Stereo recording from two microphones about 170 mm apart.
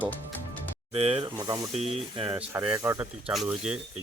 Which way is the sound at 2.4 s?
10° right (ahead or behind).